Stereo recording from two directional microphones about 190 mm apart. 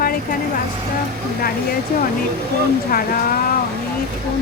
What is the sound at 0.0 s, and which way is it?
Vehicle, 50° left (ahead or behind).